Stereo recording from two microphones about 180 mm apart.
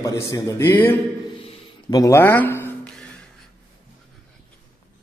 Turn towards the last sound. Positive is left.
turn(degrees=5)  # may be behind; listen again after turning